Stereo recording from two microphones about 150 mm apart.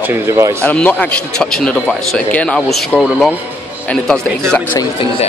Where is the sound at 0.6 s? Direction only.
10° left (ahead or behind).